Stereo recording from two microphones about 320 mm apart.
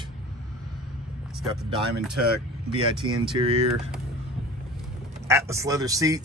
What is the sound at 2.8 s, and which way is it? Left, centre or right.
Speech, centre.